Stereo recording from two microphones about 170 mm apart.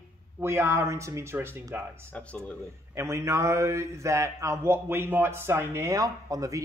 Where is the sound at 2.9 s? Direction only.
15° right (ahead or behind).